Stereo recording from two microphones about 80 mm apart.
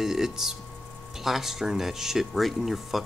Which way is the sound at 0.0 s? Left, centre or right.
Centre.